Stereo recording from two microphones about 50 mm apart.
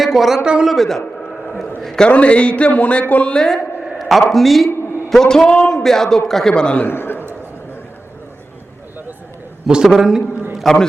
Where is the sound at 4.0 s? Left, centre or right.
Centre.